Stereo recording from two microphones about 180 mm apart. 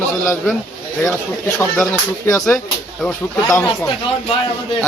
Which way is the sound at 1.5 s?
15° left (ahead or behind).